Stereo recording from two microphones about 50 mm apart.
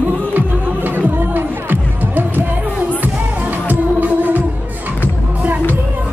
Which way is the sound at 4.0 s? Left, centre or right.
Right.